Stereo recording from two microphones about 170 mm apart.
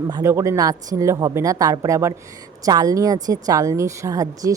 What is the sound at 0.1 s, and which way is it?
A woman's voice, 15° right (ahead or behind).